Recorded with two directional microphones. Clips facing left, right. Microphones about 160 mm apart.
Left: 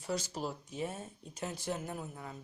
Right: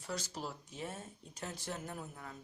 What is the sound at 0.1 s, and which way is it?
A woman's voice, 15° left (ahead or behind).